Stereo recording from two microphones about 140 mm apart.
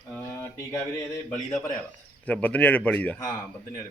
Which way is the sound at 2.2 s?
10° left (ahead or behind).